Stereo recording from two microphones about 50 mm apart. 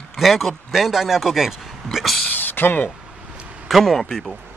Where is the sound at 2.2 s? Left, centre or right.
Left.